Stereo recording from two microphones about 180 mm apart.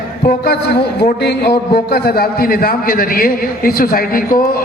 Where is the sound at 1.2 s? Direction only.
65° left (ahead or behind).